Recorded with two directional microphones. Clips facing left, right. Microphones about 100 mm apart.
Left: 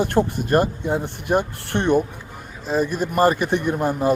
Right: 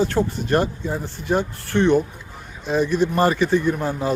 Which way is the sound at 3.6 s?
15° left (ahead or behind).